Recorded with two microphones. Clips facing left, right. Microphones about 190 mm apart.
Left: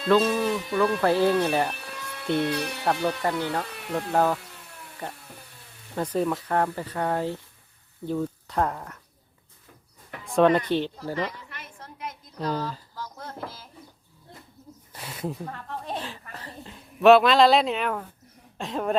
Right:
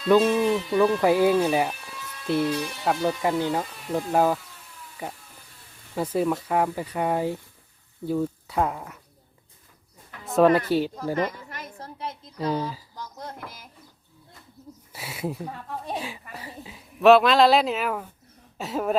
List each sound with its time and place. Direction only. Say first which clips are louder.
0.1 s speech: right 3 dB; 15° right (ahead or behind)
1.8 s a sound: left 3 dB; 65° left (ahead or behind)
2.2 s speech: right 1 dB; centre (ahead or behind)
2.5 s speech: right 1 dB; 65° left (ahead or behind)
3.0 s speech: right 2 dB; 15° right (ahead or behind)
6.0 s speech: right 1 dB; 5° right (ahead or behind)
10.3 s speech: right 1 dB; 5° right (ahead or behind)
11.1 s a sound: right 4 dB; 45° right (ahead or behind); by 12.3 s 30° right (ahead or behind)
12.4 s speech: right 2 dB; centre (ahead or behind)
13.0 s a sound: left 3 dB; 15° right (ahead or behind)
14.9 s speech: right 1 dB; 10° right (ahead or behind)